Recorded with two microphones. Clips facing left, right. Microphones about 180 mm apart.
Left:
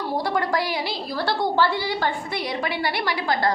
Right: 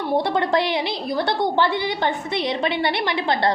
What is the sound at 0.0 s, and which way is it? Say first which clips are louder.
A woman's voice: right 3 dB; 20° right (ahead or behind).